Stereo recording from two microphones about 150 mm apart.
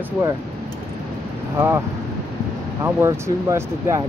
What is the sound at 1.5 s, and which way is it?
Speech, 15° right (ahead or behind).